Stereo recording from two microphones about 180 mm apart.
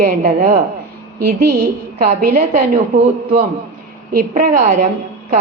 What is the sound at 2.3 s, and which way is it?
A woman's voice, 45° right (ahead or behind).